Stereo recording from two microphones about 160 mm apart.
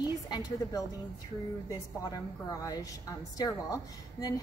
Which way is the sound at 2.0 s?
20° left (ahead or behind).